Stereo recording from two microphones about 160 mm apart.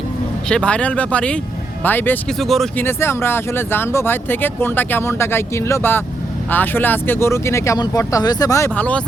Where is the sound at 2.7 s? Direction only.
15° left (ahead or behind).